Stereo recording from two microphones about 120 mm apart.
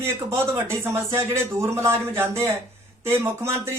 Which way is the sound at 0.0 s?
20° right (ahead or behind).